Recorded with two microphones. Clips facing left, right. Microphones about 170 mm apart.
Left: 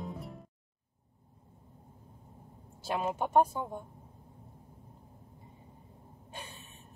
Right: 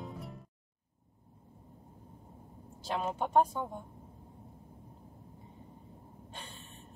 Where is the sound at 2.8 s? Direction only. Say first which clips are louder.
Left 2 dB; 5° left (ahead or behind).